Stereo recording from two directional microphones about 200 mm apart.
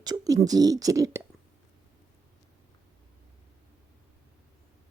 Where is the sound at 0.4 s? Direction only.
20° right (ahead or behind).